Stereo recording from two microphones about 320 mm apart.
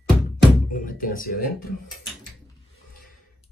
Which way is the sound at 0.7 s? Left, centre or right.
Left.